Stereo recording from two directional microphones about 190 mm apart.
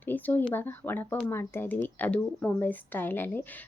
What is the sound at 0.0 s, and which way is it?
Speech, 10° left (ahead or behind).